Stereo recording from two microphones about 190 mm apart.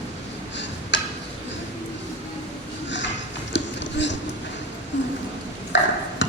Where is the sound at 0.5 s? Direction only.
70° left (ahead or behind).